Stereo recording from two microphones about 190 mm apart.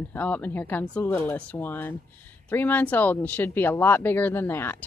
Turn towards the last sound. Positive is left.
turn(degrees=10)  # may be behind; listen again after turning